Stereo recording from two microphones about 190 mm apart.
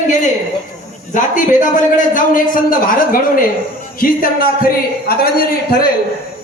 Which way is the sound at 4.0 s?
50° left (ahead or behind).